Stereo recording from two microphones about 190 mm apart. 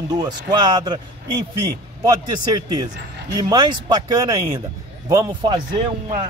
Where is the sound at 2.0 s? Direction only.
20° right (ahead or behind).